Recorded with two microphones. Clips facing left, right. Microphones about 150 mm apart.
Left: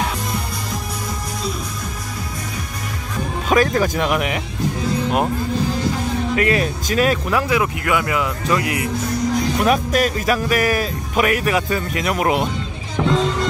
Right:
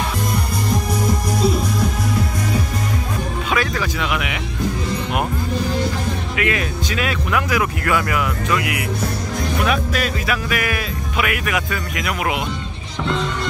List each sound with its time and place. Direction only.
3.4 s speech: 40° left (ahead or behind)
6.3 s speech: 40° left (ahead or behind); by 8.3 s 20° left (ahead or behind)
8.5 s speech: 35° left (ahead or behind)